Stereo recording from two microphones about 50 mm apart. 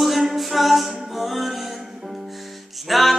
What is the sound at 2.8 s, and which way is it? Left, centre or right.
Music, centre.